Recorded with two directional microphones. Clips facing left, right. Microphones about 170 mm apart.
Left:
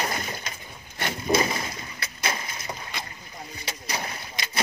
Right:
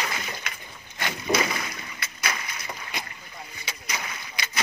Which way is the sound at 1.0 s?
25° left (ahead or behind).